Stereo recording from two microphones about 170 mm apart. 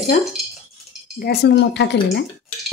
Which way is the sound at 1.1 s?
70° left (ahead or behind).